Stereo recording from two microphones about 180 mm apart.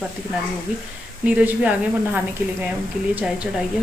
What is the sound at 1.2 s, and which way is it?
Speech, 10° right (ahead or behind).